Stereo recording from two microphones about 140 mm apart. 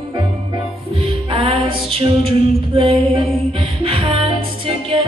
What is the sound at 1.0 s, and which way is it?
Music, 45° right (ahead or behind).